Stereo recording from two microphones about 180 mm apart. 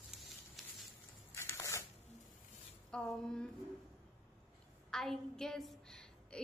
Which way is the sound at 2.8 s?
5° left (ahead or behind).